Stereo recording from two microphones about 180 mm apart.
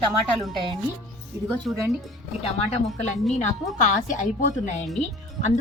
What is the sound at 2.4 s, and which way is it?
Speech, 35° left (ahead or behind).